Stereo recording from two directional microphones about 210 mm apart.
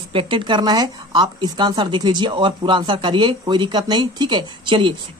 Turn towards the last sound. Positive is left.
turn(degrees=-20)  # may be behind; listen again after turning